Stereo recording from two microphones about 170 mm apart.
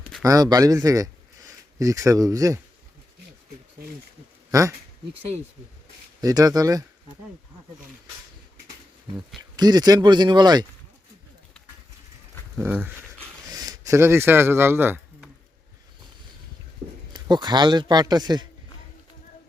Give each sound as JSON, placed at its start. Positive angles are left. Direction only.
{"t": 0.2, "sound": "speech", "side_deg": -20}
{"t": 4.5, "sound": "speech", "side_deg": -20}
{"t": 6.2, "sound": "speech", "side_deg": -20}
{"t": 9.6, "sound": "speech", "side_deg": -25}
{"t": 12.5, "sound": "speech", "side_deg": -10}
{"t": 17.1, "sound": "speech", "side_deg": -25}